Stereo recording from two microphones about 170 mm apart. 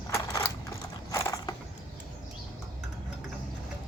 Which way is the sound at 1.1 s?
20° left (ahead or behind).